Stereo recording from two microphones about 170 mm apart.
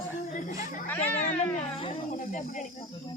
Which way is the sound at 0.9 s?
10° left (ahead or behind).